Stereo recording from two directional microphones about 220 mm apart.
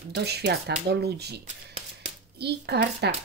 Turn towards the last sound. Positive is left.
turn(degrees=-50)  # may be behind; listen again after turning